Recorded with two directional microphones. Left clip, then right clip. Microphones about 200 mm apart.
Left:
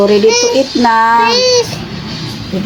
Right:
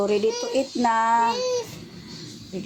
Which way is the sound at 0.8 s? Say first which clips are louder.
Left 11 dB; 30° right (ahead or behind).